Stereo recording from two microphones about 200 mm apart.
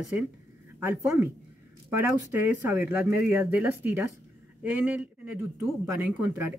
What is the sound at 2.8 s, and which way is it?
Speech, 10° right (ahead or behind).